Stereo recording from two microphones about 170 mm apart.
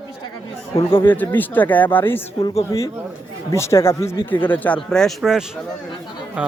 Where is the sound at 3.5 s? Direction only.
15° left (ahead or behind).